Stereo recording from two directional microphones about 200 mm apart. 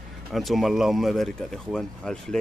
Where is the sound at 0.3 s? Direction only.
Centre (ahead or behind).